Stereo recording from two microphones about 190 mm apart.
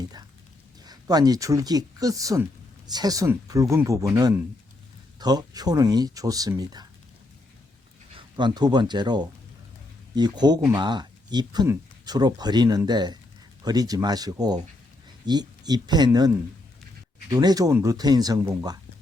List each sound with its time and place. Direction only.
0.9 s speech: 20° right (ahead or behind)
8.4 s speech: 25° right (ahead or behind)
17.3 s speech: 20° right (ahead or behind)